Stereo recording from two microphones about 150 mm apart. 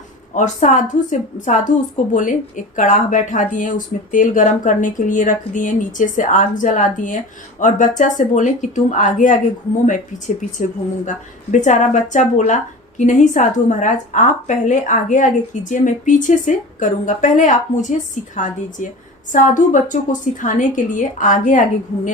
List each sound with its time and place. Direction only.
0.3 s speech: 55° left (ahead or behind)